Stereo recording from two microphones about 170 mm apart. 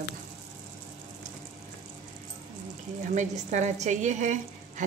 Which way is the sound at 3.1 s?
45° right (ahead or behind).